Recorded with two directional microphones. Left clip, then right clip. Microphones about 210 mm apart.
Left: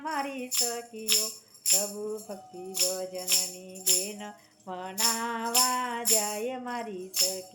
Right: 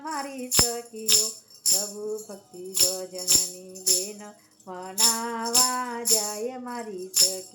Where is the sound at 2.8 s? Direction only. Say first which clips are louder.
Right 2 dB; centre (ahead or behind).